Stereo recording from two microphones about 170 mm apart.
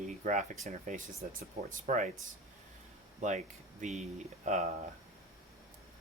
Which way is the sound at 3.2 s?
45° right (ahead or behind).